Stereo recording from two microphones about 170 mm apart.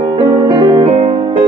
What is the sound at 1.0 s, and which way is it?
Music, 35° right (ahead or behind).